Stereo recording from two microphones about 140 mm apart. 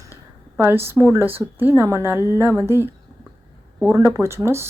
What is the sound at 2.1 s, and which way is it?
Speech, 25° left (ahead or behind).